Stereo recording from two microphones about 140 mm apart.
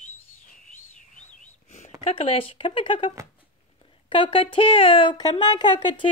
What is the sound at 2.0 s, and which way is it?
Speech, 45° left (ahead or behind).